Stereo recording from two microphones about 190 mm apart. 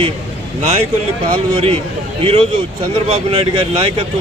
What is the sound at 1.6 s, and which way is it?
A man's voice, 30° right (ahead or behind).